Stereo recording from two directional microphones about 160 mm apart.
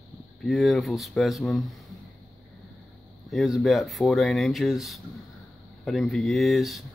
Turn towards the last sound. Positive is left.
turn(degrees=0)  # may be behind; listen again after turning